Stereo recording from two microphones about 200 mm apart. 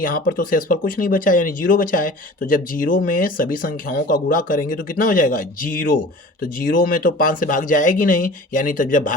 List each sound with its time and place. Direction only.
0.0 s speech: 45° left (ahead or behind)